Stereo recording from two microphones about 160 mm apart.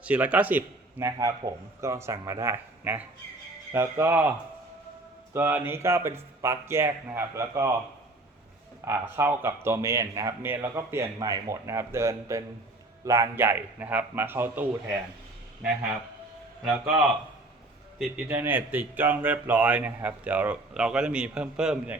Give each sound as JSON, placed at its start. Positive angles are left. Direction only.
{"t": 0.0, "sound": "speech", "side_deg": -10}
{"t": 8.8, "sound": "speech", "side_deg": -15}
{"t": 16.6, "sound": "speech", "side_deg": -5}